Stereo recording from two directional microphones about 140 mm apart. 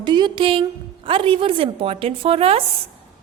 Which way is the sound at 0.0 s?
30° right (ahead or behind).